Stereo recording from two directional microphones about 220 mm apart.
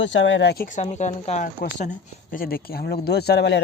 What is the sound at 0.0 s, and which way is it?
Speech, 55° left (ahead or behind).